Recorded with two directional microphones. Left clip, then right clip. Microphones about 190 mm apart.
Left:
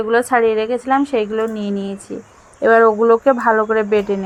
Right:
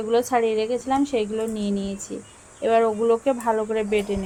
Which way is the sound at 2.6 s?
25° left (ahead or behind).